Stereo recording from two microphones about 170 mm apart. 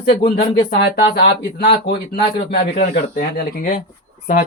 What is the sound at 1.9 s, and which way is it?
Speech, 65° left (ahead or behind).